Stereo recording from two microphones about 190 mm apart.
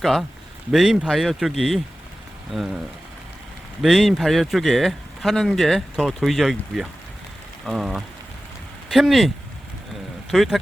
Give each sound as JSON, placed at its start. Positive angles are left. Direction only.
{"t": 0.0, "sound": "speech", "side_deg": 0}
{"t": 10.3, "sound": "speech", "side_deg": 0}